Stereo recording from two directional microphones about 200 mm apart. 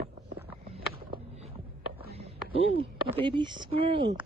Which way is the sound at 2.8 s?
25° right (ahead or behind).